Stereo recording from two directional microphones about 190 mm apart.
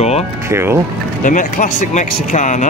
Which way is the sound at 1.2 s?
40° left (ahead or behind).